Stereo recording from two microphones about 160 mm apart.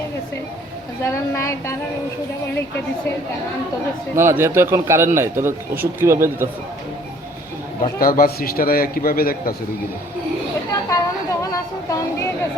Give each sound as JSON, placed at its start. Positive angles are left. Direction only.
{"t": 1.0, "sound": "a woman's voice", "side_deg": 20}
{"t": 4.1, "sound": "speech", "side_deg": -15}
{"t": 7.8, "sound": "a man's voice", "side_deg": 60}
{"t": 10.7, "sound": "a sound", "side_deg": 20}